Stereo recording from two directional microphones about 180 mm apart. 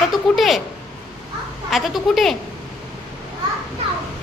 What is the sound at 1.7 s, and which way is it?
Speech, centre (ahead or behind).